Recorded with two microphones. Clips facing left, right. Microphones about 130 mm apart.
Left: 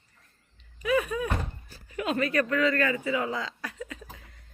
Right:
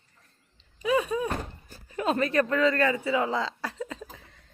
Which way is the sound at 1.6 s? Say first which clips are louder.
Right 4 dB; 40° right (ahead or behind).